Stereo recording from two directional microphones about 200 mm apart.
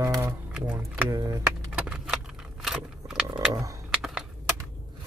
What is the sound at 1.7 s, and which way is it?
Keys jangling, 5° right (ahead or behind).